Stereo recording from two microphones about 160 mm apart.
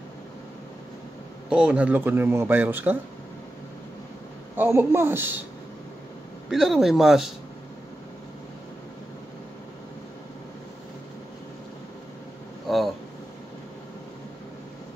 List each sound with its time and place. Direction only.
1.5 s speech: 5° right (ahead or behind)
4.6 s speech: 15° right (ahead or behind)
6.5 s speech: centre (ahead or behind)
12.6 s a sound: centre (ahead or behind)